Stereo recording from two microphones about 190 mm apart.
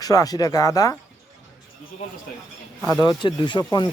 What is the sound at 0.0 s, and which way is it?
Speech, 20° left (ahead or behind).